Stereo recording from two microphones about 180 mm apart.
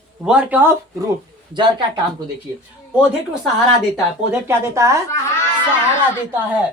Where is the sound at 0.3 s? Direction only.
5° right (ahead or behind).